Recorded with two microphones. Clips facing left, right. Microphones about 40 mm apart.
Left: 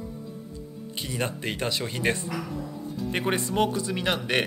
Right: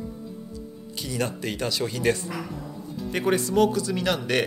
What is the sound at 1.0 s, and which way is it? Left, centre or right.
Speech, left.